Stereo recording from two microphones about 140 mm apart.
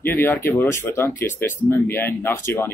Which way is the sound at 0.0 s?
15° left (ahead or behind).